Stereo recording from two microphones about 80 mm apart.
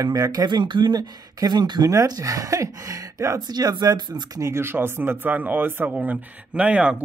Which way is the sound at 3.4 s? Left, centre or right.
Right.